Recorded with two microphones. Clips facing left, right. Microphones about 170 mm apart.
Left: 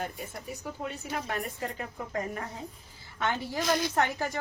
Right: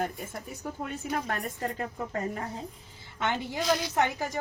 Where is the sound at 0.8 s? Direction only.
50° right (ahead or behind).